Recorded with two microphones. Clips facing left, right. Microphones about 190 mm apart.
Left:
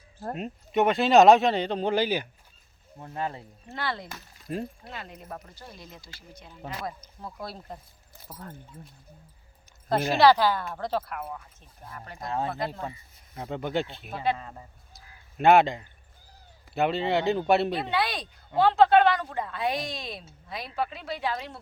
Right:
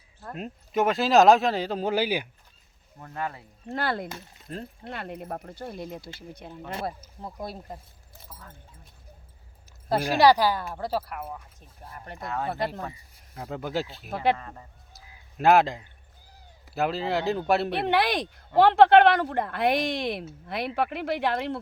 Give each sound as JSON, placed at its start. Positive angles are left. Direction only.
{"t": 0.3, "sound": "speech", "side_deg": 0}
{"t": 3.0, "sound": "speech", "side_deg": 20}
{"t": 3.7, "sound": "speech", "side_deg": -50}
{"t": 4.5, "sound": "speech", "side_deg": 10}
{"t": 4.9, "sound": "speech", "side_deg": -60}
{"t": 7.2, "sound": "speech", "side_deg": -20}
{"t": 9.9, "sound": "speech", "side_deg": -15}
{"t": 12.2, "sound": "speech", "side_deg": 30}
{"t": 13.3, "sound": "speech", "side_deg": 0}
{"t": 14.3, "sound": "speech", "side_deg": 15}
{"t": 14.9, "sound": "a sound", "side_deg": 0}
{"t": 16.7, "sound": "speech", "side_deg": 0}
{"t": 17.7, "sound": "speech", "side_deg": -65}